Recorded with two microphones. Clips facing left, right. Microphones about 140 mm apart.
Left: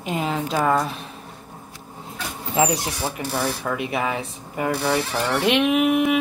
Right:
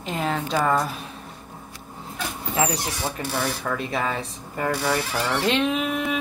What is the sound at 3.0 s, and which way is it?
Speech, 10° left (ahead or behind).